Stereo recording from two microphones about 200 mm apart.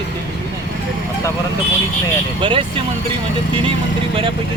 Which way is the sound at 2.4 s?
25° right (ahead or behind).